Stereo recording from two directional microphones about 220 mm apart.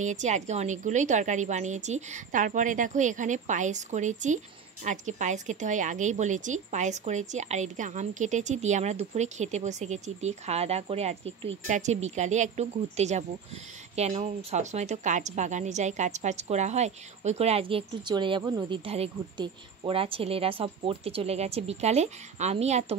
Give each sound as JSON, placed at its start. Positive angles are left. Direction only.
{"t": 0.0, "sound": "a woman's voice", "side_deg": -35}